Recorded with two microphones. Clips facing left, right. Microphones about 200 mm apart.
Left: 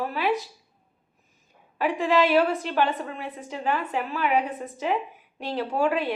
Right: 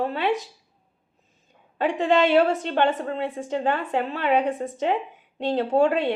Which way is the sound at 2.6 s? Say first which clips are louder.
Right 3 dB; 30° right (ahead or behind).